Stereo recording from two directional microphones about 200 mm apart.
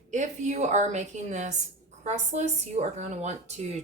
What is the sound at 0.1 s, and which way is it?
Speech, 35° right (ahead or behind).